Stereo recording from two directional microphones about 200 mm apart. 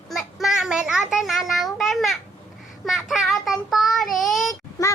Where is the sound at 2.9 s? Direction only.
Centre (ahead or behind).